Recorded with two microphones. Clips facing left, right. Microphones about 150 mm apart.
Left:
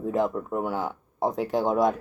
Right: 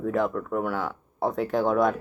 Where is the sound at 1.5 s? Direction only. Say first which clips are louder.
Right 1 dB; 40° left (ahead or behind).